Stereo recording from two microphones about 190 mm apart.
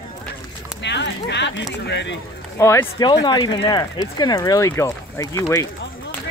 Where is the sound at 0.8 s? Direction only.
65° left (ahead or behind).